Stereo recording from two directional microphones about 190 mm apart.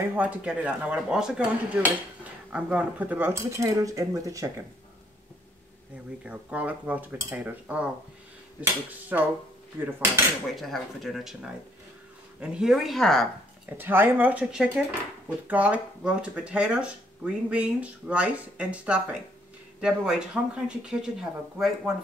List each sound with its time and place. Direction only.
0.1 s speech: 5° right (ahead or behind)
6.2 s speech: 10° right (ahead or behind)
9.1 s speech: 10° right (ahead or behind)
12.4 s speech: 5° right (ahead or behind)
13.7 s speech: 10° right (ahead or behind)